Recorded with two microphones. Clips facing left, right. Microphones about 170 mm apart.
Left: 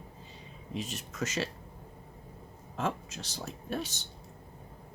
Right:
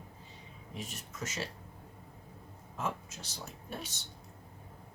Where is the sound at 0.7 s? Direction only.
80° left.